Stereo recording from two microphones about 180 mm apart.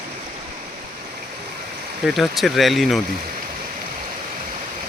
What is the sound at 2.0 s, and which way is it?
Speech, centre (ahead or behind).